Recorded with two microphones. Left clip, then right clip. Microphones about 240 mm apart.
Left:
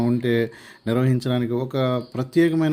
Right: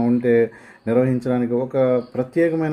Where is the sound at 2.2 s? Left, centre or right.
Left.